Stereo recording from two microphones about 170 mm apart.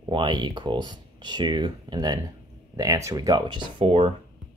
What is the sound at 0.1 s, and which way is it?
Speech, 30° right (ahead or behind).